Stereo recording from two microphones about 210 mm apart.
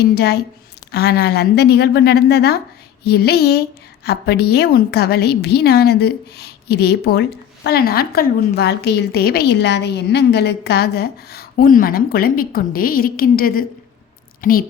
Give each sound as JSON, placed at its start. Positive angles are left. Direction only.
{"t": 0.0, "sound": "a woman's voice", "side_deg": 50}